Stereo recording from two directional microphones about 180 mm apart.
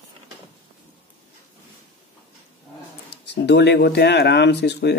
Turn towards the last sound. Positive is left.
turn(degrees=65)  # may be behind; listen again after turning